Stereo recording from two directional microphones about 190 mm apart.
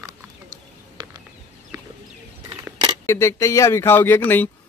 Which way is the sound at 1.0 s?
20° right (ahead or behind).